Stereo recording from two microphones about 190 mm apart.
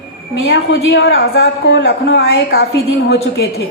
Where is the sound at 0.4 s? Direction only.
65° left (ahead or behind).